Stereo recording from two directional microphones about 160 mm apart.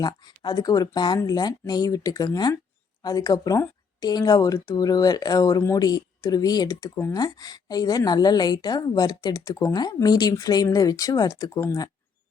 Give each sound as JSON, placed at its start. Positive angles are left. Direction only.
{"t": 0.0, "sound": "speech", "side_deg": 25}